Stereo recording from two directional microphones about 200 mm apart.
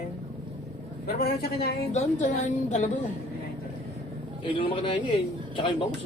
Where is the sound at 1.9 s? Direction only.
35° left (ahead or behind).